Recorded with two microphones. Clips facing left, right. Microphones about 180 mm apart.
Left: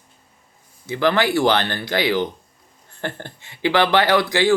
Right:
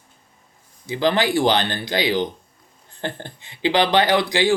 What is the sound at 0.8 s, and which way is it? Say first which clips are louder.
Speech: left 1 dB; 20° right (ahead or behind).